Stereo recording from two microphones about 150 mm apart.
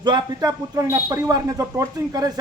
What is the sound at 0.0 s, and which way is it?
Speech, 30° right (ahead or behind).